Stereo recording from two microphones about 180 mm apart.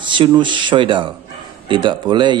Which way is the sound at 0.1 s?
25° right (ahead or behind).